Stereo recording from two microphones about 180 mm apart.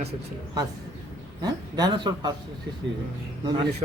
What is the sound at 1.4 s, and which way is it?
Speech, 20° right (ahead or behind).